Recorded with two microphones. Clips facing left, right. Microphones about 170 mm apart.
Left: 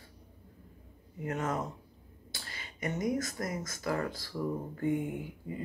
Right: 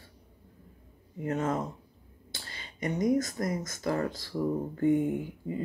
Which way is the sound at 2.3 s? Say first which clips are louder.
Right 1 dB; 30° right (ahead or behind).